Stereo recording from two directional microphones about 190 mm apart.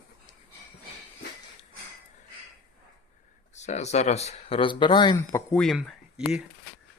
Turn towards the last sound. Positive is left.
turn(degrees=0)  # may be behind; listen again after turning